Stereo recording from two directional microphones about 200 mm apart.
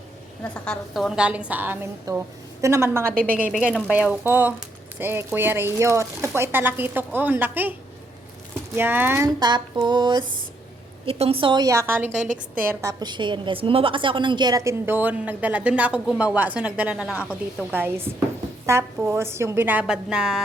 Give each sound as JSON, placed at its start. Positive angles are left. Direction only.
{"t": 0.4, "sound": "a woman's voice", "side_deg": 5}
{"t": 8.7, "sound": "a woman's voice", "side_deg": -10}